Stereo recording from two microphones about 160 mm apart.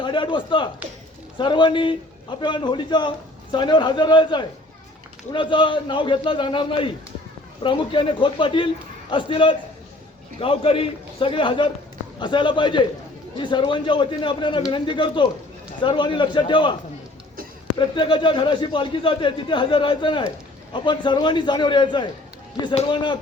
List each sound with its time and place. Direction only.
0.0 s a man's voice: 30° left (ahead or behind)
17.7 s a man's voice: 30° left (ahead or behind)
22.7 s a man's voice: 40° left (ahead or behind)